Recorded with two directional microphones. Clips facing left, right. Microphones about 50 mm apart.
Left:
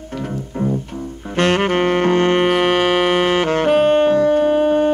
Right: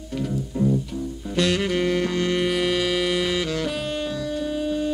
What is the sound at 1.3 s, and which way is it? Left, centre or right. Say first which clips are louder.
Saxophone: left 6 dB; left.